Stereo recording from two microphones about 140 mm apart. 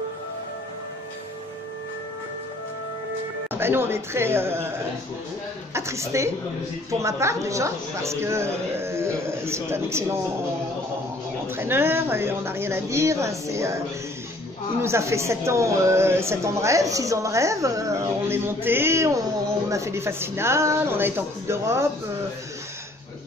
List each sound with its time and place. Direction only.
3.5 s a woman's voice: 15° right (ahead or behind)
11.4 s a woman's voice: 15° right (ahead or behind)